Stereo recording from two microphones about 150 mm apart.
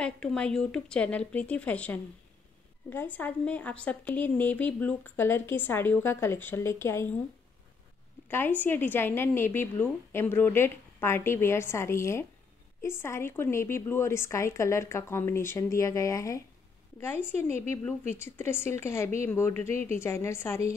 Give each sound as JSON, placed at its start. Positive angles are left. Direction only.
{"t": 0.0, "sound": "speech", "side_deg": 5}
{"t": 8.3, "sound": "speech", "side_deg": 15}